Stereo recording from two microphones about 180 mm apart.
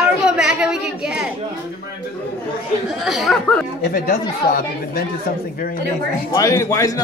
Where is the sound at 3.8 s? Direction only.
55° left (ahead or behind).